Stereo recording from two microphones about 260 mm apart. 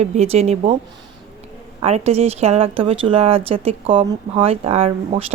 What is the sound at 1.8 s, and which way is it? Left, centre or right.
Speech, right.